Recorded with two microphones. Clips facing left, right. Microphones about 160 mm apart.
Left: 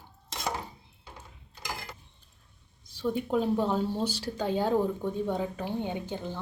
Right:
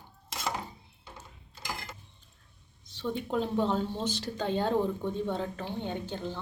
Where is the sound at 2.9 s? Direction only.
10° left (ahead or behind).